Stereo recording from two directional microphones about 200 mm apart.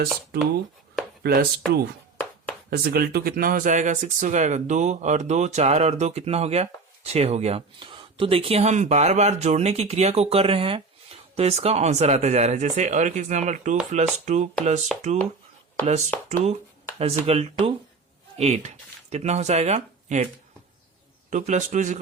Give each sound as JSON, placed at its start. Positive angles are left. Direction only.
{"t": 1.2, "sound": "speech", "side_deg": -50}
{"t": 14.9, "sound": "speech", "side_deg": 0}
{"t": 17.0, "sound": "speech", "side_deg": -30}
{"t": 21.2, "sound": "speech", "side_deg": -35}